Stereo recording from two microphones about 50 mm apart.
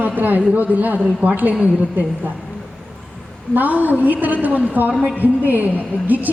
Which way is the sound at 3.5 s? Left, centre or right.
Right.